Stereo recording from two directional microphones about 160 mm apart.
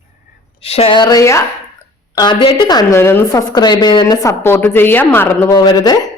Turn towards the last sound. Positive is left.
turn(degrees=25)  # may be behind; listen again after turning